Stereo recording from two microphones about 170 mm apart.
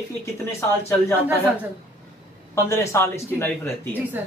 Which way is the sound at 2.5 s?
15° left (ahead or behind).